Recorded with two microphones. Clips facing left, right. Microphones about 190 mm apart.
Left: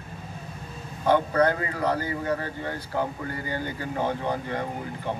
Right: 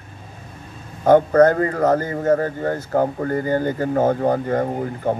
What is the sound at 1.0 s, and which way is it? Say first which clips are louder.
Speech: right 9 dB; 45° right (ahead or behind).